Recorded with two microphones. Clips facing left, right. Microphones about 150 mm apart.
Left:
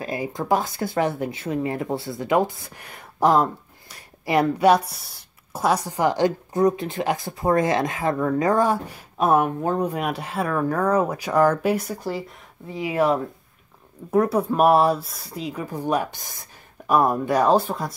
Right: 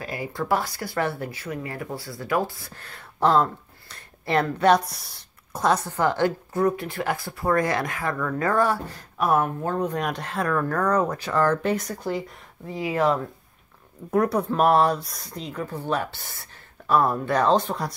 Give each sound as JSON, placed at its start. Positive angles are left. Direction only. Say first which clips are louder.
{"t": 0.0, "sound": "speech", "louder": "left 3 dB", "side_deg": 20}
{"t": 14.1, "sound": "speech", "louder": "left 2 dB", "side_deg": 5}